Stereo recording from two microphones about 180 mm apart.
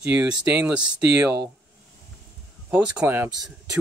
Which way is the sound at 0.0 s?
5° right (ahead or behind).